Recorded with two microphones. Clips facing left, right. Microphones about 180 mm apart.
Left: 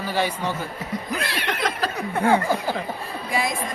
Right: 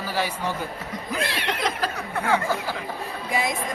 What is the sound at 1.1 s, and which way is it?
Speech, 25° right (ahead or behind).